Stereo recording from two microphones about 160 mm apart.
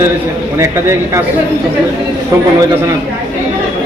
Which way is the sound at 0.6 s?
15° right (ahead or behind).